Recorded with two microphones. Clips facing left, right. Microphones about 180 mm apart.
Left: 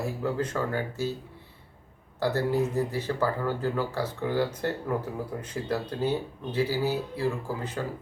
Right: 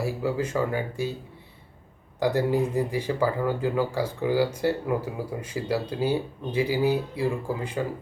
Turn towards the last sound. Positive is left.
turn(degrees=-15)  # may be behind; listen again after turning